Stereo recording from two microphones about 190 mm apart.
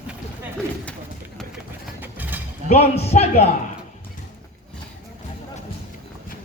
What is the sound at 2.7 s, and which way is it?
Speech, 35° left (ahead or behind).